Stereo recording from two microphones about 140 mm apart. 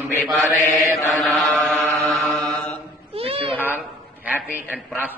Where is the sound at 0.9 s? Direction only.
Centre (ahead or behind).